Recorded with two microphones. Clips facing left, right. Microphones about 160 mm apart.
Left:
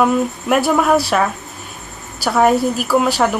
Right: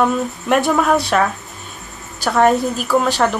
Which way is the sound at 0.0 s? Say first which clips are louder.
Left 2 dB; 5° left (ahead or behind).